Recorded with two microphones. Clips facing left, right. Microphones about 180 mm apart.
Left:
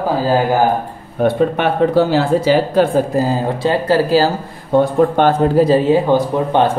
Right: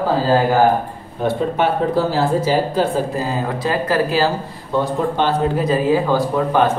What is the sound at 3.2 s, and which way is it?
Speech, 30° left (ahead or behind).